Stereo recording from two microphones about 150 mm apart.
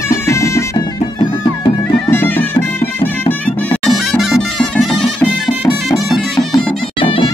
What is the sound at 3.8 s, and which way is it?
Bagpipes, centre (ahead or behind).